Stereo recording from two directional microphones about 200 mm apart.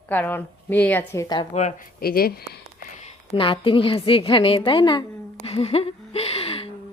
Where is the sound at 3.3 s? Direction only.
25° left (ahead or behind).